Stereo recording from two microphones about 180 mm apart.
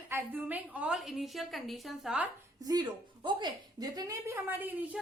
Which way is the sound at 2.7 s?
25° right (ahead or behind).